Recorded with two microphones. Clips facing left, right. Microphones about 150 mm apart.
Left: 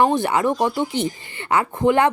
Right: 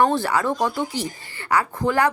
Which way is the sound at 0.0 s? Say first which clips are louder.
Left 2 dB; 20° left (ahead or behind).